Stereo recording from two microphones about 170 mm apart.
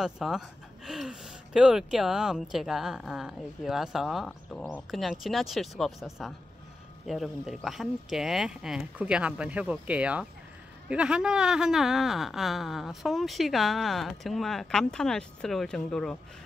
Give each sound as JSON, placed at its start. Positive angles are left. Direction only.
{"t": 0.0, "sound": "speech", "side_deg": 0}